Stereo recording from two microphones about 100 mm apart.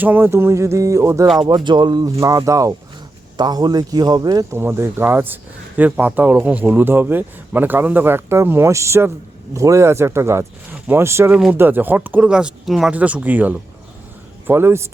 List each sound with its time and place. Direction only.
0.0 s speech: 20° right (ahead or behind)
1.5 s speech: 50° right (ahead or behind)
2.1 s a man's voice: 35° right (ahead or behind)
3.3 s a man's voice: 45° right (ahead or behind)
4.5 s speech: 25° right (ahead or behind)
11.3 s speech: 10° right (ahead or behind)
11.5 s speech: 20° right (ahead or behind); by 12.9 s 5° right (ahead or behind)
12.9 s speech: 15° right (ahead or behind)